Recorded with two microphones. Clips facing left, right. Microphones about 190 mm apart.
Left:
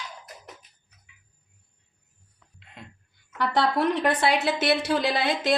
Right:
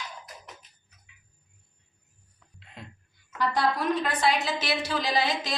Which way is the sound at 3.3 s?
65° left (ahead or behind).